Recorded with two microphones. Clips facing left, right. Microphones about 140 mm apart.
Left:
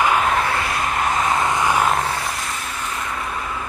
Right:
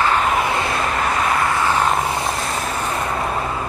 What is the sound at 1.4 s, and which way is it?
Vehicle, 15° left (ahead or behind).